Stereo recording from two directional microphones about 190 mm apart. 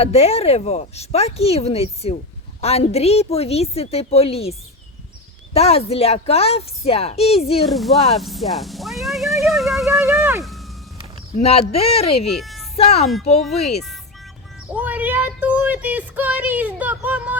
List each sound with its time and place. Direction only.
0.0 s speech: 30° left (ahead or behind)
5.5 s speech: 30° left (ahead or behind)
7.7 s speech: centre (ahead or behind)
10.0 s speech: 10° right (ahead or behind)
11.3 s speech: 30° left (ahead or behind)
12.3 s speech: centre (ahead or behind)
12.7 s speech: 30° left (ahead or behind)
14.7 s speech: 10° right (ahead or behind)